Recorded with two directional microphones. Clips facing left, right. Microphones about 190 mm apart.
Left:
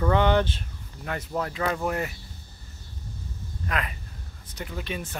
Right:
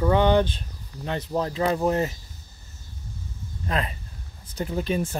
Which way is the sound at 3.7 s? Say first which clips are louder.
Right 3 dB; 30° right (ahead or behind).